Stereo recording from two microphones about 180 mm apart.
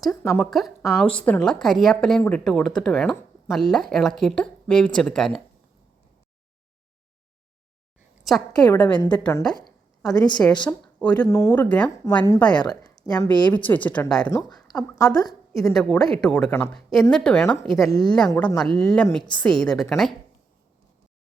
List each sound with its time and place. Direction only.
0.3 s a woman's voice: centre (ahead or behind)
8.5 s speech: 20° left (ahead or behind)
9.2 s speech: 10° left (ahead or behind)
10.2 s speech: 20° left (ahead or behind)
11.0 s speech: 5° left (ahead or behind)
11.3 s speech: 20° left (ahead or behind)
12.5 s speech: 25° left (ahead or behind)
13.5 s speech: 10° left (ahead or behind)
14.3 s speech: 20° left (ahead or behind)
15.5 s a woman's voice: centre (ahead or behind)
17.9 s speech: 25° left (ahead or behind)
18.3 s a woman's voice: 10° left (ahead or behind)